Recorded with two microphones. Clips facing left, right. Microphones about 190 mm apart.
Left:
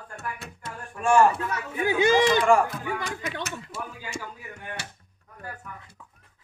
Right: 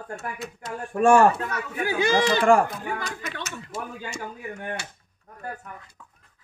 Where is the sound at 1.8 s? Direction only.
20° left (ahead or behind).